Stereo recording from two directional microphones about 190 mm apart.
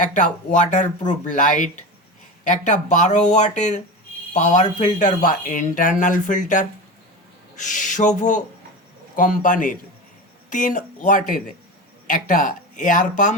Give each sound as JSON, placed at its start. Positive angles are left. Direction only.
{"t": 0.0, "sound": "speech", "side_deg": 40}